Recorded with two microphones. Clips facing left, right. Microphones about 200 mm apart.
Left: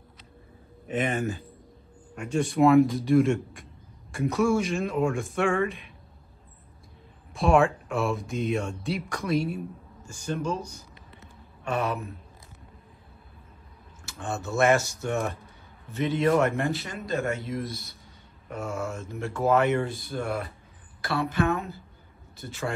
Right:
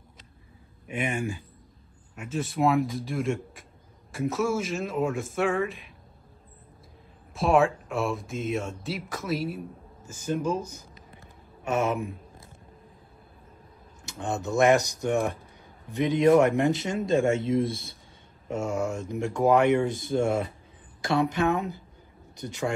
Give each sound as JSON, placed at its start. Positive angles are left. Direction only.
{"t": 0.8, "sound": "speech", "side_deg": -10}
{"t": 7.3, "sound": "speech", "side_deg": 0}
{"t": 10.2, "sound": "speech", "side_deg": -10}
{"t": 14.0, "sound": "a man's voice", "side_deg": -15}